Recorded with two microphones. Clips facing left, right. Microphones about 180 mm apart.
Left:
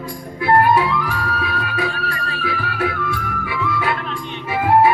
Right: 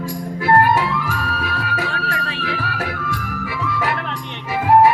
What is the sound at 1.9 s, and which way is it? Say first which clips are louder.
Music: right 1 dB; 85° right.